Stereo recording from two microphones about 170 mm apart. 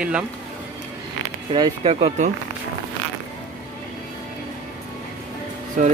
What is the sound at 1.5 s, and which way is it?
Speech, 35° right (ahead or behind).